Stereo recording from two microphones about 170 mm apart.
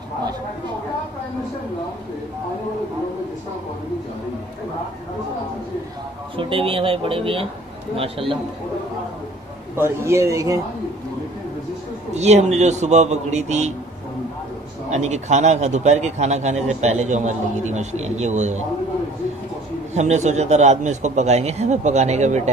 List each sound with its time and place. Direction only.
6.3 s a man's voice: 30° right (ahead or behind)
9.8 s a man's voice: 15° right (ahead or behind)
12.1 s a man's voice: 40° right (ahead or behind)
14.9 s a man's voice: 40° right (ahead or behind)
19.9 s a man's voice: 40° right (ahead or behind)